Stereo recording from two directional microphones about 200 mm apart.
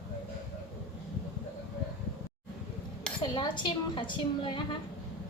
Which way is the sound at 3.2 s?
25° left (ahead or behind).